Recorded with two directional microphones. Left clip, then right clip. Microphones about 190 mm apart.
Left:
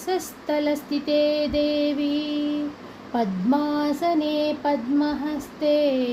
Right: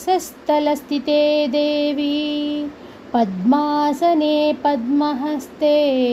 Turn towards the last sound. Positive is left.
turn(degrees=-25)  # may be behind; listen again after turning